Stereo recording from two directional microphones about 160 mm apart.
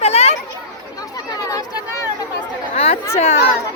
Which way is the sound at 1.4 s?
20° left (ahead or behind).